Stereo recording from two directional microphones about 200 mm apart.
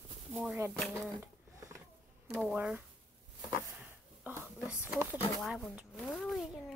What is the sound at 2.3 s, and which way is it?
Speech, 5° right (ahead or behind).